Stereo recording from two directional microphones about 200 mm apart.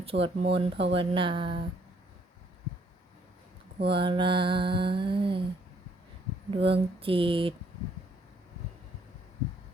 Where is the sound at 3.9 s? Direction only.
25° right (ahead or behind).